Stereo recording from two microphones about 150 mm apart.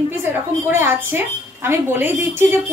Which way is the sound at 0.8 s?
15° right (ahead or behind).